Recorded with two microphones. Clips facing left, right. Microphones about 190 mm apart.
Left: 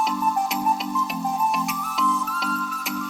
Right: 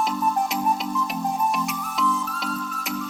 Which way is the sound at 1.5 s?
Centre (ahead or behind).